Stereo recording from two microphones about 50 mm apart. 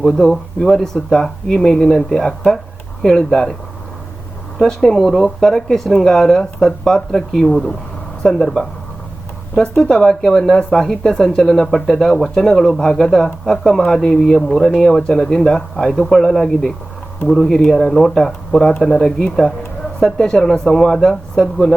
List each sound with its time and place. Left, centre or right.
0.0 s speech: centre
4.5 s speech: centre
9.9 s speech: centre